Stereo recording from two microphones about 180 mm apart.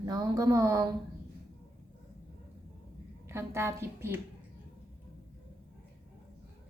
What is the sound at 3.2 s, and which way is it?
Speech, 15° right (ahead or behind).